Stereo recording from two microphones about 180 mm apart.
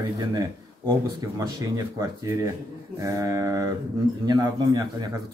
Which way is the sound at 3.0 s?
20° right (ahead or behind).